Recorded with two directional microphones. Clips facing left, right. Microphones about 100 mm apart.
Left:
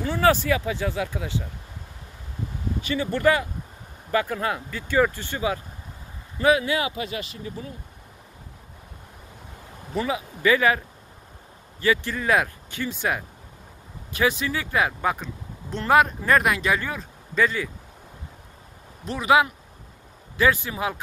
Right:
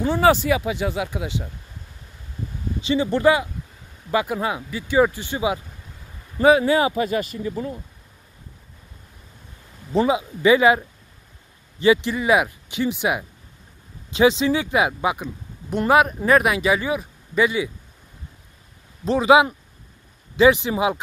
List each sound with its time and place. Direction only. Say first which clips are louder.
0.0 s speech: right 3 dB; 20° right (ahead or behind)
2.8 s speech: right 4 dB; 20° right (ahead or behind)
6.3 s speech: right 5 dB; 35° right (ahead or behind)
9.9 s speech: right 7 dB; 20° right (ahead or behind)
11.8 s speech: right 6 dB; 20° right (ahead or behind)
19.0 s speech: right 5 dB; 30° right (ahead or behind)